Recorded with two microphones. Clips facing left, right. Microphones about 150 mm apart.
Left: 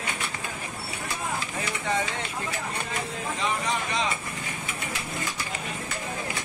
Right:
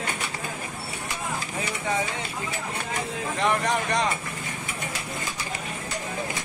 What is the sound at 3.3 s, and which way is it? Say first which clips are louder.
Vehicle: right 5 dB; 65° right (ahead or behind).